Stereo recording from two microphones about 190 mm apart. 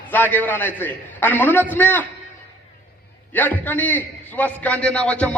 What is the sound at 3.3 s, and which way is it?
A man's voice, 10° left (ahead or behind).